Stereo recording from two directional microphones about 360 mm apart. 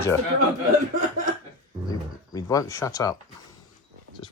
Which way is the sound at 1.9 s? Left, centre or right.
Centre.